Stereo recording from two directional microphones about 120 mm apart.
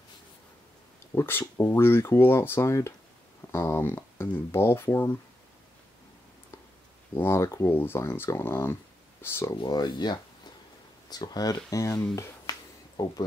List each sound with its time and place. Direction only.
1.1 s speech: 20° left (ahead or behind)
7.2 s speech: 20° left (ahead or behind)
9.6 s speech: 40° left (ahead or behind)